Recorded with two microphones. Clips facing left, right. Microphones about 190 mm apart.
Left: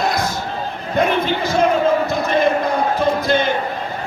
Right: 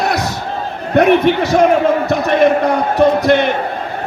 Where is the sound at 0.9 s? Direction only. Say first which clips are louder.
Right 8 dB; 65° right (ahead or behind).